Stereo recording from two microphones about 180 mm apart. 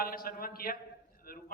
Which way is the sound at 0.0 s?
55° left (ahead or behind).